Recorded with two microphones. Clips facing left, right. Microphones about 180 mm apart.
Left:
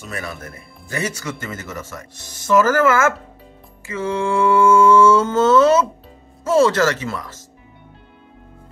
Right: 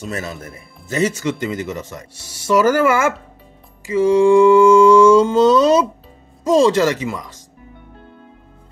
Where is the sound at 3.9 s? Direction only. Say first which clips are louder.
Right 10 dB; 15° right (ahead or behind).